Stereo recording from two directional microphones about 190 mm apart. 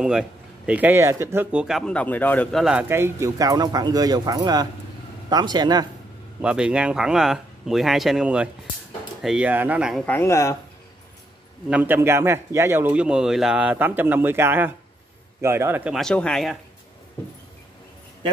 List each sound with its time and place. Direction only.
0.0 s speech: 5° right (ahead or behind)
2.6 s speech: 5° right (ahead or behind); by 5.9 s 20° right (ahead or behind)
6.4 s speech: 5° right (ahead or behind)
10.0 s speech: 10° left (ahead or behind)
11.7 s a man's voice: 10° right (ahead or behind)